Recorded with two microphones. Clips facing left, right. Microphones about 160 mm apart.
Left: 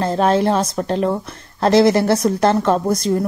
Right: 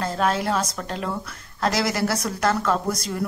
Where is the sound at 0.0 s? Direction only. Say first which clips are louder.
Left 7 dB; 30° left (ahead or behind).